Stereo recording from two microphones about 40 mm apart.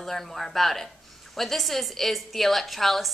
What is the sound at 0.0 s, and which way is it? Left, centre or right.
A woman's voice, centre.